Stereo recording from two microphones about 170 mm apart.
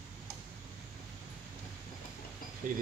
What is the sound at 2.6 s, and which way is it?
Speech, 55° right (ahead or behind).